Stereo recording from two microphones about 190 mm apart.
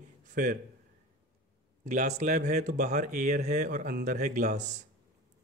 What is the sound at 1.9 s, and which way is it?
Speech, 40° right (ahead or behind).